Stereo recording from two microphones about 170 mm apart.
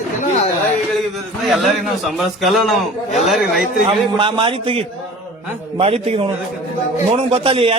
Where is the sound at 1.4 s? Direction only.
Centre (ahead or behind).